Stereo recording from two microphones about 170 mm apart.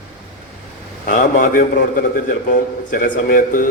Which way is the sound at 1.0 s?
55° left (ahead or behind).